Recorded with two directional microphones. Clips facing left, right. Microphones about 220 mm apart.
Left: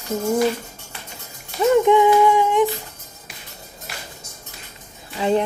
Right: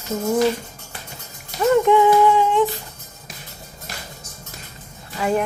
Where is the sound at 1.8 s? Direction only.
15° left (ahead or behind).